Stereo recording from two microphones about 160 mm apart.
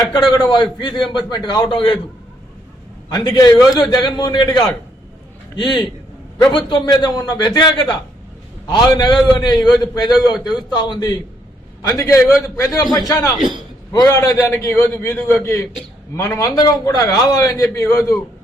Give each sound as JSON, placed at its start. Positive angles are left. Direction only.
{"t": 0.0, "sound": "a man's voice", "side_deg": 30}
{"t": 3.1, "sound": "a man's voice", "side_deg": 25}